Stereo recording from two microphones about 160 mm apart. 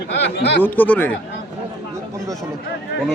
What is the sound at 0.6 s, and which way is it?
Speech, 10° left (ahead or behind).